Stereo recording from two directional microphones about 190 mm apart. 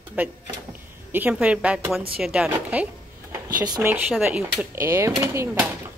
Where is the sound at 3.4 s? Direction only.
20° right (ahead or behind).